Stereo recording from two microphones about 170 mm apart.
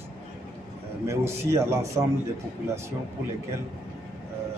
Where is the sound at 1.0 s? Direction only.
15° right (ahead or behind).